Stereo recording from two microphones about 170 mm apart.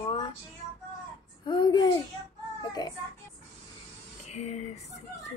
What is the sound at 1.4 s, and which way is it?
Speech, 25° left (ahead or behind).